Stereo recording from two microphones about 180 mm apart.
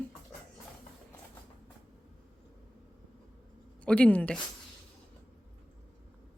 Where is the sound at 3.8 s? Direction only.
5° left (ahead or behind).